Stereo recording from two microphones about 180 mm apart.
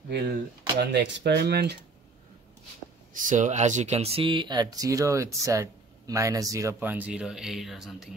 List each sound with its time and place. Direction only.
0.7 s speech: 65° right (ahead or behind)
3.1 s speech: 45° right (ahead or behind); by 8.1 s centre (ahead or behind)